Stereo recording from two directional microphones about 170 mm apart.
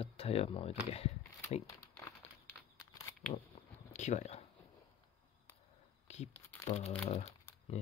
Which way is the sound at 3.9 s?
45° left (ahead or behind).